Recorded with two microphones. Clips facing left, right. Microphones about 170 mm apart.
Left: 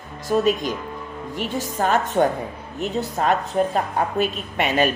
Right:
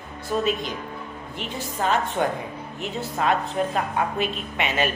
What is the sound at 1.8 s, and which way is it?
A woman's voice, 45° left (ahead or behind).